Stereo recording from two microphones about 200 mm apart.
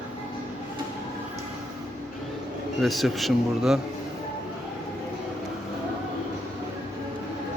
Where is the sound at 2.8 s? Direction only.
Centre (ahead or behind).